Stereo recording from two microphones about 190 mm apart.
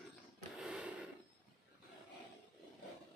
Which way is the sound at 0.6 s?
5° right (ahead or behind).